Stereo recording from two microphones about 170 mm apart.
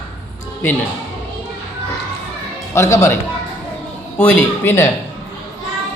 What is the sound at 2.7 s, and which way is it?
Speech, 15° left (ahead or behind).